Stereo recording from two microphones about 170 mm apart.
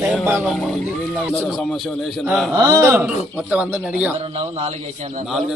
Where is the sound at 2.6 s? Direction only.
15° right (ahead or behind).